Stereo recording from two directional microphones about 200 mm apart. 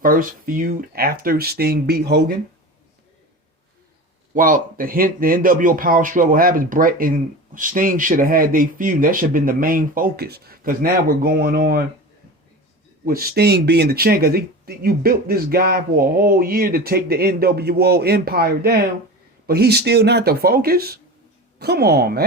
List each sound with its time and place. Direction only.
0.0 s speech: 45° right (ahead or behind)
4.4 s speech: 45° right (ahead or behind)
13.1 s speech: 45° right (ahead or behind)